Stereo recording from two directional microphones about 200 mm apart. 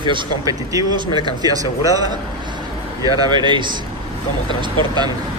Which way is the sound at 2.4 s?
20° right (ahead or behind).